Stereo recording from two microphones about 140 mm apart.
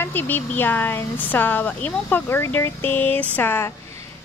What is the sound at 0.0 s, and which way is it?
Speech, 15° left (ahead or behind).